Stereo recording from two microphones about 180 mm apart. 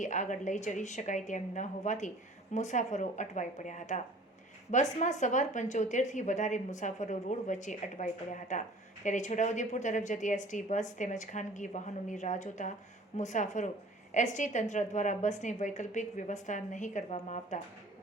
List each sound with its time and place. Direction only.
0.0 s a woman's voice: 45° left (ahead or behind)